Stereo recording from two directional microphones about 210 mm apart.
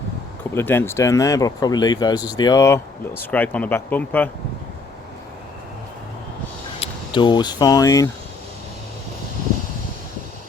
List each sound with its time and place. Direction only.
0.5 s speech: 10° left (ahead or behind)
6.7 s speech: 20° left (ahead or behind)